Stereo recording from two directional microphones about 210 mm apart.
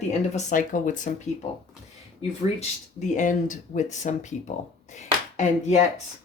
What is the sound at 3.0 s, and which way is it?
Speech, 35° left (ahead or behind).